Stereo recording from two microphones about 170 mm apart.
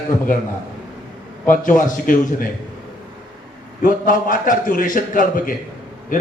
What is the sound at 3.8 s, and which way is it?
A man's voice, 55° left (ahead or behind).